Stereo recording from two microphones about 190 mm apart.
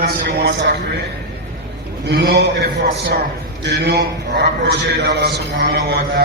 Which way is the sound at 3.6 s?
60° right (ahead or behind).